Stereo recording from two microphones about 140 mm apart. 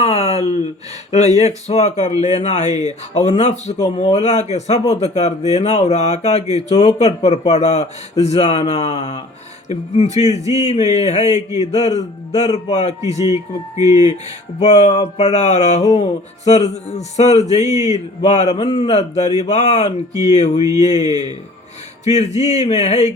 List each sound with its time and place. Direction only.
0.0 s a sound: 50° left (ahead or behind)
1.4 s speech: 50° left (ahead or behind)
10.4 s speech: 25° right (ahead or behind)
10.7 s a sound: 55° left (ahead or behind)
11.5 s speech: 55° left (ahead or behind)
13.0 s speech: 25° right (ahead or behind)
14.6 s speech: 55° left (ahead or behind)
20.6 s speech: 25° right (ahead or behind)
20.8 s a sound: 55° left (ahead or behind)
22.1 s speech: 50° left (ahead or behind)